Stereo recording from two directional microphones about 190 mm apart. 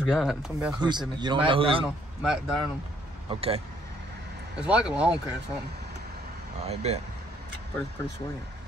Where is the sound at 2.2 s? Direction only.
Centre (ahead or behind).